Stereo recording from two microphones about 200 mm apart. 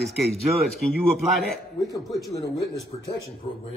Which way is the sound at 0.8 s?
Centre (ahead or behind).